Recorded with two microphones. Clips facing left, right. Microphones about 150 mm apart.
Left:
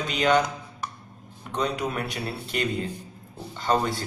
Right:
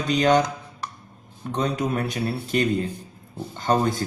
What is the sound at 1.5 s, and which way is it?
A man's voice, 45° right (ahead or behind).